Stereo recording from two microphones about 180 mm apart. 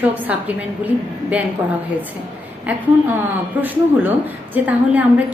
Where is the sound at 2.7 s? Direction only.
10° right (ahead or behind).